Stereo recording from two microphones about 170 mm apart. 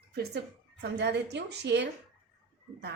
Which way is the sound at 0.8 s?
85° right.